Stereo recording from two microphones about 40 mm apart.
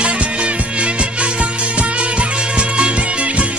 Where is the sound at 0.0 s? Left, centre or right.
Right.